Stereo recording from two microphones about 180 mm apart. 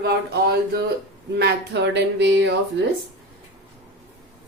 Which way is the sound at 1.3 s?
70° right (ahead or behind).